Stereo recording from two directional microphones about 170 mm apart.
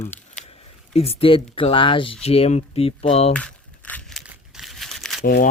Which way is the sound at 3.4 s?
5° left (ahead or behind).